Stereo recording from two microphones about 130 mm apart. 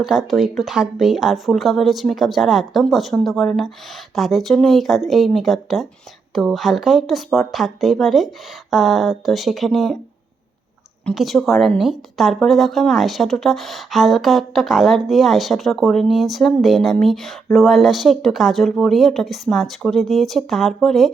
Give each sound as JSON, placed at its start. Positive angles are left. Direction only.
{"t": 0.0, "sound": "speech", "side_deg": -5}
{"t": 11.1, "sound": "speech", "side_deg": 0}